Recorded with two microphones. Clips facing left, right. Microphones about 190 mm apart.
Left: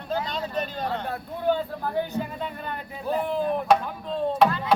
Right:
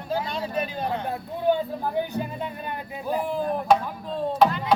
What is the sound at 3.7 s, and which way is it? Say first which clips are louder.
Speech: right 1 dB; centre (ahead or behind).